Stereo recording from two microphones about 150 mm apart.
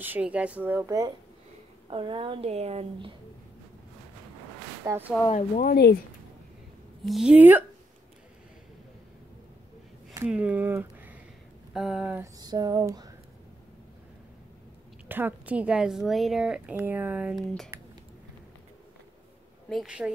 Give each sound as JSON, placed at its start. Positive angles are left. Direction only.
{"t": 0.0, "sound": "a woman's voice", "side_deg": -10}
{"t": 1.9, "sound": "a woman's voice", "side_deg": -35}
{"t": 4.8, "sound": "speech", "side_deg": -15}
{"t": 5.6, "sound": "speech", "side_deg": 80}
{"t": 7.1, "sound": "a woman's voice", "side_deg": -5}
{"t": 10.2, "sound": "speech", "side_deg": -10}
{"t": 12.4, "sound": "a sound", "side_deg": -25}
{"t": 15.0, "sound": "a woman's voice", "side_deg": -15}
{"t": 19.7, "sound": "speech", "side_deg": -5}